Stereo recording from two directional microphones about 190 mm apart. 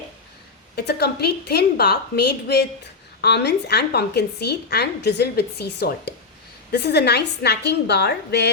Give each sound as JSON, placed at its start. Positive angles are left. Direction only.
{"t": 0.8, "sound": "a woman's voice", "side_deg": 60}